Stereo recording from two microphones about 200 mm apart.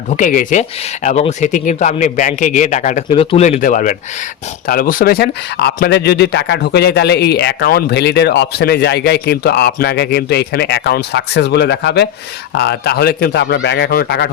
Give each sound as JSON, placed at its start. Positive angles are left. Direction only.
{"t": 0.1, "sound": "a man's voice", "side_deg": 40}